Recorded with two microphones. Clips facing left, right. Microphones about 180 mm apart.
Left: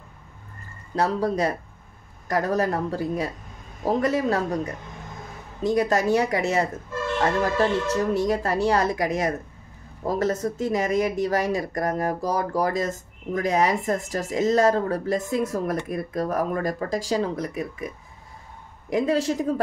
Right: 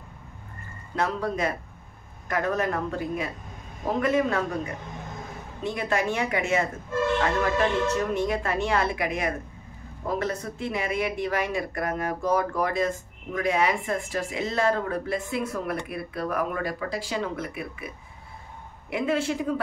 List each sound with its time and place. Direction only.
0.9 s speech: 35° left (ahead or behind)
5.6 s speech: 40° left (ahead or behind)